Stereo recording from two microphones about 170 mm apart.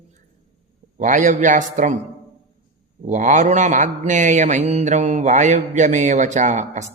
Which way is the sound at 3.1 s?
45° right (ahead or behind).